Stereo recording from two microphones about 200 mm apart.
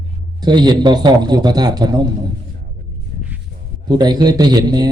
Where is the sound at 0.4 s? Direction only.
20° right (ahead or behind).